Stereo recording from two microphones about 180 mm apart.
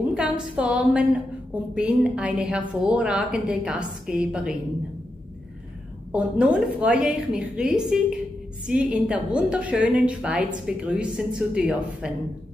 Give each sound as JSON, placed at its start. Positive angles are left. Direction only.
{"t": 0.1, "sound": "a woman's voice", "side_deg": -5}
{"t": 6.1, "sound": "a woman's voice", "side_deg": -5}